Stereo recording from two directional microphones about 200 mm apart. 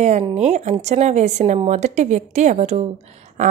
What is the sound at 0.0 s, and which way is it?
Speech, 35° right (ahead or behind).